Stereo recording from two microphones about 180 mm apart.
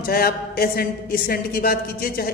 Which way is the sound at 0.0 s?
55° left (ahead or behind).